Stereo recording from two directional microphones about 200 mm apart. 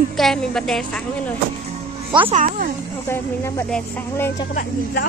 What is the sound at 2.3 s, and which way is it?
Speech, 35° right (ahead or behind).